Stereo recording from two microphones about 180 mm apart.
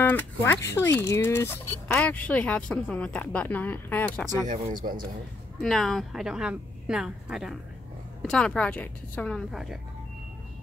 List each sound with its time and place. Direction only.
0.0 s speech: 10° left (ahead or behind)
4.8 s a man's voice: 35° right (ahead or behind)
5.6 s a woman's voice: centre (ahead or behind)